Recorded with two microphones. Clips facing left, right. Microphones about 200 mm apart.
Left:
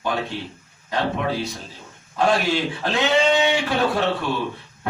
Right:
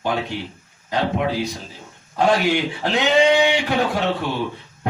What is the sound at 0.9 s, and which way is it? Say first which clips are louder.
Speech: right 2 dB; 15° right (ahead or behind).